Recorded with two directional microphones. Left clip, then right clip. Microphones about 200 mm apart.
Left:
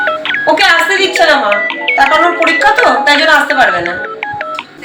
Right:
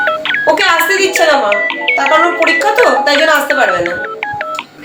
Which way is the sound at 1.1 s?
Centre (ahead or behind).